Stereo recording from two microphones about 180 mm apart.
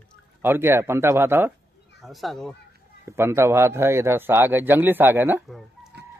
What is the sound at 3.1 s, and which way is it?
A man's voice, 15° right (ahead or behind).